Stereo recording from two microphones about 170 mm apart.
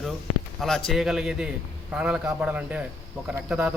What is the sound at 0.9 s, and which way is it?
Speech, centre (ahead or behind).